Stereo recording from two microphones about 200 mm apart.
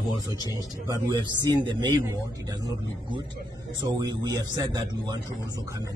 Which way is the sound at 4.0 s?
20° right (ahead or behind).